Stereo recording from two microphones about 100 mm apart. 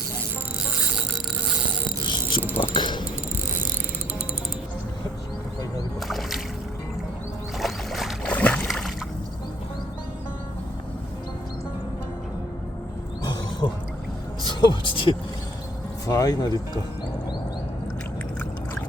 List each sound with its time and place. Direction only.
2.7 s music: 55° left (ahead or behind)
6.0 s music: centre (ahead or behind)
7.6 s boat: centre (ahead or behind)
8.3 s boat: 15° left (ahead or behind)
8.6 s a sound: centre (ahead or behind)
13.6 s pour: 55° left (ahead or behind)
14.4 s a sound: 50° left (ahead or behind)
16.0 s speech: 35° left (ahead or behind)